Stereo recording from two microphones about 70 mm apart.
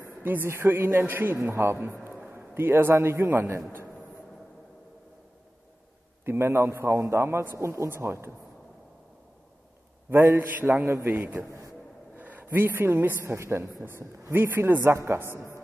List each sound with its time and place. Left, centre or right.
0.2 s a man's voice: right
6.2 s a man's voice: right
10.5 s a man's voice: right
11.3 s a man's voice: right
12.2 s a man's voice: right